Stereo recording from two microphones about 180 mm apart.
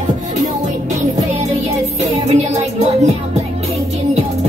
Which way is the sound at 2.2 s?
40° right (ahead or behind).